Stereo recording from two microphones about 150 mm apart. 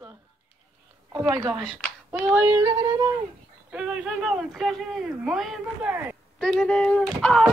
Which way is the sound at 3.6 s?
5° right (ahead or behind).